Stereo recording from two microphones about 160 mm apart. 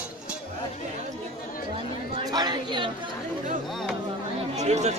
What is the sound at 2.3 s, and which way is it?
Chatter, 25° right (ahead or behind).